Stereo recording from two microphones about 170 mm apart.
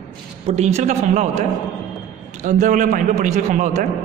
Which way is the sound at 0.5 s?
40° right (ahead or behind).